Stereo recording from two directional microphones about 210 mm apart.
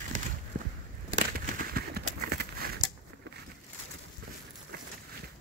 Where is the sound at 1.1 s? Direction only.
45° right (ahead or behind).